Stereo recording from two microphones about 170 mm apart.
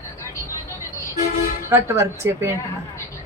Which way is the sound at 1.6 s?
15° right (ahead or behind).